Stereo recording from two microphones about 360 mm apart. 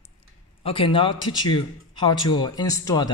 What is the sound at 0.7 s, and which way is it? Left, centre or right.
A man's voice, centre.